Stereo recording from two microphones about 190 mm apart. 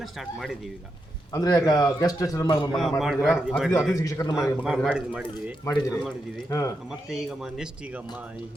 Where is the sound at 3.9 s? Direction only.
15° left (ahead or behind).